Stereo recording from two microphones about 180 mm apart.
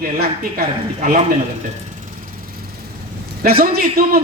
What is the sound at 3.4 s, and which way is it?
Speech, 55° right (ahead or behind).